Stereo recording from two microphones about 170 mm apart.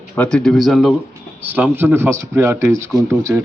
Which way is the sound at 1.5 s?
10° right (ahead or behind).